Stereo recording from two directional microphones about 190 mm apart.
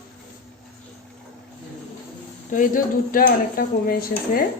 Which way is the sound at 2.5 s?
45° left (ahead or behind).